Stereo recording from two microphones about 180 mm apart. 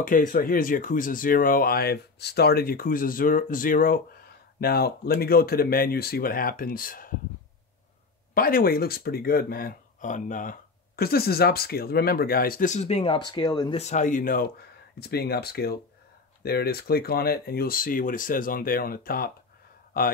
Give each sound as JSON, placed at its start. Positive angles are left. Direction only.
{"t": 0.0, "sound": "speech", "side_deg": 50}
{"t": 8.4, "sound": "speech", "side_deg": 55}
{"t": 13.7, "sound": "speech", "side_deg": 40}